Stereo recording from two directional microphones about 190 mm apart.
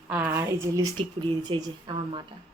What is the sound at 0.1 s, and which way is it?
A woman's voice, 10° right (ahead or behind).